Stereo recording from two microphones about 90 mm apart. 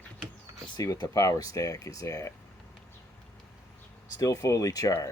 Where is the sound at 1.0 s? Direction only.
40° left (ahead or behind).